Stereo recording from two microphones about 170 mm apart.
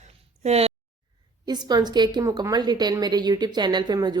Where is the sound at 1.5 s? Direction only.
25° right (ahead or behind).